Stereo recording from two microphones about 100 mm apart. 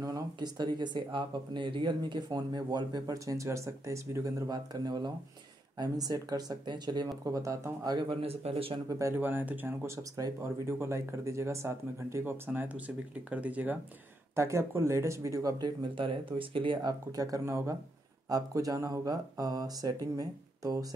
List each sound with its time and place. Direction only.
0.0 s speech: 40° right (ahead or behind)
7.2 s speech: 35° right (ahead or behind)
8.2 s speech: 75° right (ahead or behind)
8.7 s speech: 35° right (ahead or behind)
9.2 s speech: 20° right (ahead or behind)
10.1 s speech: 30° right (ahead or behind); by 13.7 s 15° right (ahead or behind)
14.3 s speech: 25° right (ahead or behind); by 16.9 s 55° right (ahead or behind)
17.1 s speech: 35° right (ahead or behind)